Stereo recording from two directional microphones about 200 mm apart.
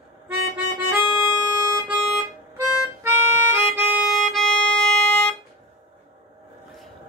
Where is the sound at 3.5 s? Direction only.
5° right (ahead or behind).